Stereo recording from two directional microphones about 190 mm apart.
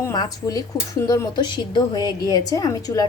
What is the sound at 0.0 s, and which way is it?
Speech, 20° left (ahead or behind).